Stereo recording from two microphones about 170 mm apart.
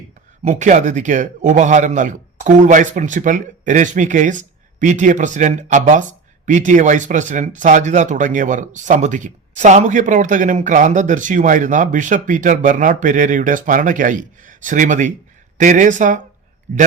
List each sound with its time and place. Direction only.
0.4 s a man's voice: 45° right (ahead or behind)